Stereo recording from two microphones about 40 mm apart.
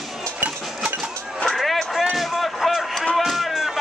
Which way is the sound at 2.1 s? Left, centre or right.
Centre.